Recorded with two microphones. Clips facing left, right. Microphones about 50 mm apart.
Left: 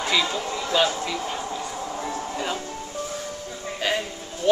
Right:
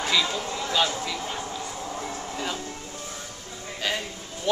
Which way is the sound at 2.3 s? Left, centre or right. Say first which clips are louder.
Left 1 dB; centre.